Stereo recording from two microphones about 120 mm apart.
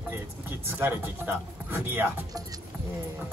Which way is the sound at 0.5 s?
20° right (ahead or behind).